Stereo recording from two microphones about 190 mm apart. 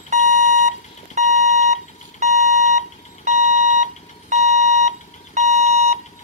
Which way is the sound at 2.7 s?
40° right (ahead or behind).